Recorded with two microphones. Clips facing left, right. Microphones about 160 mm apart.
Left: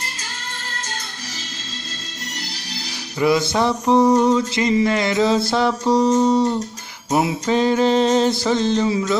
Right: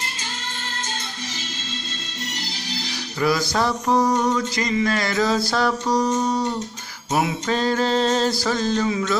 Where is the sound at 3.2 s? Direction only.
20° left (ahead or behind).